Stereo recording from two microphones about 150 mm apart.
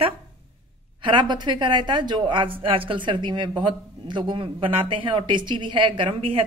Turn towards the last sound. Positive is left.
turn(degrees=-35)  # may be behind; listen again after turning